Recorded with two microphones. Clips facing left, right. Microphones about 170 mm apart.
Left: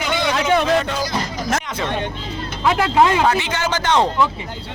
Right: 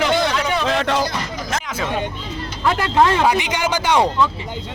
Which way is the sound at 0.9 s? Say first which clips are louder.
Right 4 dB; 75° right (ahead or behind).